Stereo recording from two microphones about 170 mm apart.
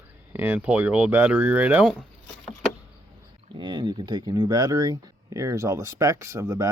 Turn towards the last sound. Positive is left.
turn(degrees=-20)  # may be behind; listen again after turning